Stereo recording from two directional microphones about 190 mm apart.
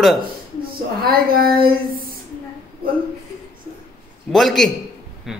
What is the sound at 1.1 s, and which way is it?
Speech, 50° right (ahead or behind).